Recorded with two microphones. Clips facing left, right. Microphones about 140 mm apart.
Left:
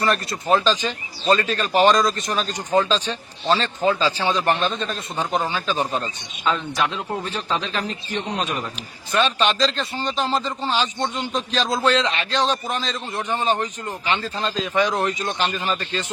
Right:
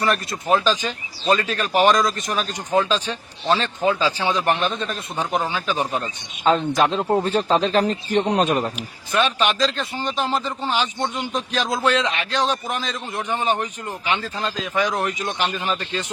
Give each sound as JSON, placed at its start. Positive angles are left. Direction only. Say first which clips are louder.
{"t": 0.4, "sound": "a man's voice", "louder": "even", "side_deg": -5}
{"t": 6.4, "sound": "a man's voice", "louder": "right 5 dB", "side_deg": -40}
{"t": 8.2, "sound": "speech", "louder": "right 7 dB", "side_deg": -55}
{"t": 9.1, "sound": "a man's voice", "louder": "even", "side_deg": -10}